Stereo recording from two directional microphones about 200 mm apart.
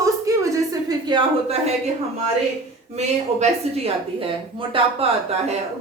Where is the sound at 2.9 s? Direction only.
35° right (ahead or behind).